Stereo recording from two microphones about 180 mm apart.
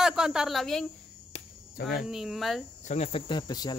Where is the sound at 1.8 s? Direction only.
55° left (ahead or behind).